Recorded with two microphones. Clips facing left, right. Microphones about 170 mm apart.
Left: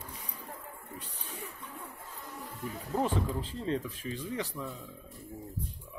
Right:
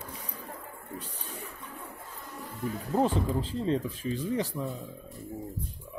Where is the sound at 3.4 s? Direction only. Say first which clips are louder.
Right 5 dB; 35° right (ahead or behind).